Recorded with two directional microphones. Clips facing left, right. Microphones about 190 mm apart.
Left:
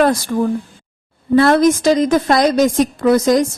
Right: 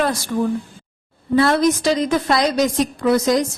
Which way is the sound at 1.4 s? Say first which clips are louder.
Left 4 dB; 50° left (ahead or behind).